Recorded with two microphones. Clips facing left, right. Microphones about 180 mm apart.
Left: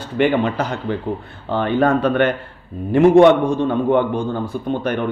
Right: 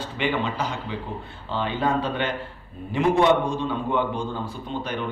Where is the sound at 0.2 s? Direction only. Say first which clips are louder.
Left 9 dB; 60° left (ahead or behind).